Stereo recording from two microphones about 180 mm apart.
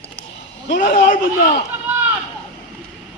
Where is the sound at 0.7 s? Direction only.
45° left (ahead or behind).